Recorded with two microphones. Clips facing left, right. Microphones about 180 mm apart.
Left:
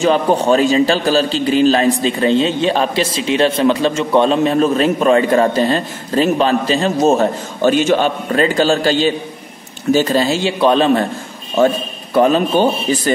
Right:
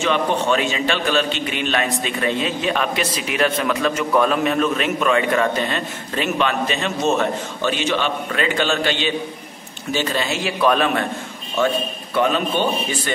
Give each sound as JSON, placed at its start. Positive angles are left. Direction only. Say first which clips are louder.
{"t": 0.0, "sound": "a man's voice", "louder": "left 6 dB", "side_deg": 35}